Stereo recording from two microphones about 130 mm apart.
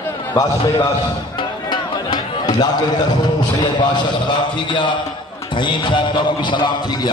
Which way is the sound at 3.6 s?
35° left (ahead or behind).